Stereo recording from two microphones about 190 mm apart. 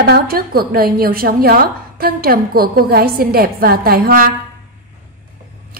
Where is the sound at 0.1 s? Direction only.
50° right (ahead or behind).